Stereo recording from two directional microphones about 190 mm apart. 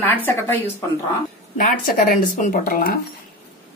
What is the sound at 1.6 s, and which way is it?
Speech, 45° left (ahead or behind).